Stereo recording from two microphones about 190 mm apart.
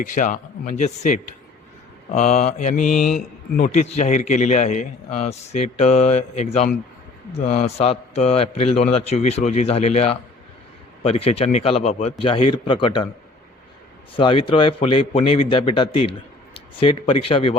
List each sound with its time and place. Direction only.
0.0 s a man's voice: 45° left (ahead or behind); by 13.1 s 25° left (ahead or behind)
14.2 s a man's voice: 25° left (ahead or behind)